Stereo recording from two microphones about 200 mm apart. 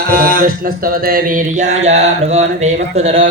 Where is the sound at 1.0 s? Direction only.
45° right (ahead or behind).